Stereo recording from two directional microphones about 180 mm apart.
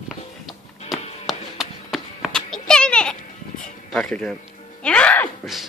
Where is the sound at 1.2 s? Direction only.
Centre (ahead or behind).